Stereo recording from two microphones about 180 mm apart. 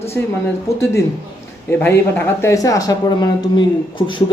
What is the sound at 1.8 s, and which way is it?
Speech, 10° left (ahead or behind).